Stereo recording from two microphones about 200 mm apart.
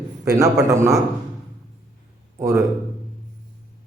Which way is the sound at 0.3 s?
15° right (ahead or behind).